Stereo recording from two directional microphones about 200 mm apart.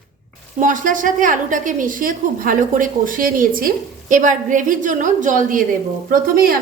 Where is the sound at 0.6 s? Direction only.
40° right (ahead or behind).